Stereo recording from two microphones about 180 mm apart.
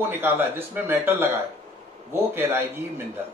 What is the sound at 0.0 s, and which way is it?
Speech, 10° right (ahead or behind).